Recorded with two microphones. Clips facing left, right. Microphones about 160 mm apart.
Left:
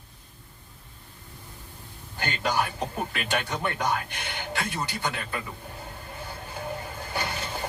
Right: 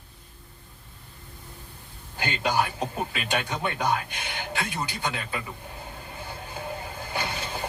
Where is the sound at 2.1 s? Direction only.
15° right (ahead or behind).